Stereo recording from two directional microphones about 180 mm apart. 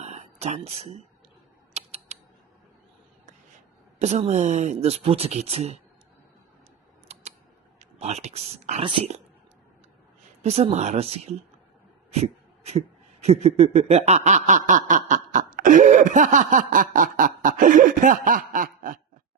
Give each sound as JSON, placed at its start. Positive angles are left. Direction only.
{"t": 0.0, "sound": "a sound", "side_deg": -40}
{"t": 1.7, "sound": "typing", "side_deg": -35}
{"t": 4.0, "sound": "speech", "side_deg": -40}
{"t": 7.1, "sound": "camera", "side_deg": -35}
{"t": 7.8, "sound": "speech", "side_deg": -35}
{"t": 10.4, "sound": "speech", "side_deg": -35}
{"t": 12.1, "sound": "a sound", "side_deg": -35}
{"t": 13.2, "sound": "snicker", "side_deg": -35}